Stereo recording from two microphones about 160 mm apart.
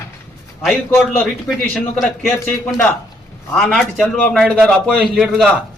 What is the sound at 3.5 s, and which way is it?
A man's voice, 5° left (ahead or behind).